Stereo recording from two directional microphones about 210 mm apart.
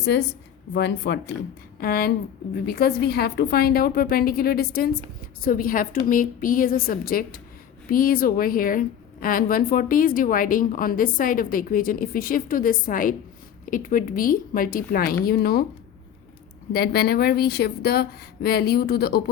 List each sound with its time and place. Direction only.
0.0 s a woman's voice: 55° left (ahead or behind)
16.7 s a woman's voice: 45° left (ahead or behind)